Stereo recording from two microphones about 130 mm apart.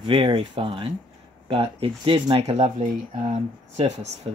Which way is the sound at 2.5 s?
60° right (ahead or behind).